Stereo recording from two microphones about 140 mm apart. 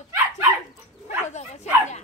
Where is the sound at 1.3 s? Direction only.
55° left (ahead or behind).